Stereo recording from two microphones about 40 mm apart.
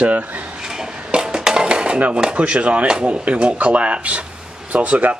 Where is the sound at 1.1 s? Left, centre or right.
Centre.